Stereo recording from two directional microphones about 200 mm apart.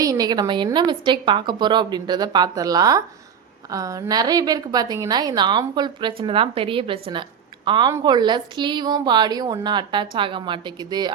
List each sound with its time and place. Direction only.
0.0 s a woman's voice: 20° right (ahead or behind)